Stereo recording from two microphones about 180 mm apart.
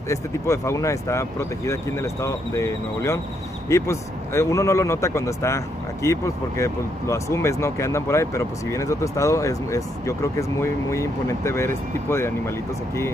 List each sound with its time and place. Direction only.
0.1 s speech: 15° left (ahead or behind)
2.2 s speech: 15° left (ahead or behind)